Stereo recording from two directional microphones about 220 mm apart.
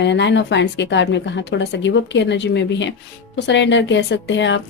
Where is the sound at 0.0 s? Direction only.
55° left (ahead or behind).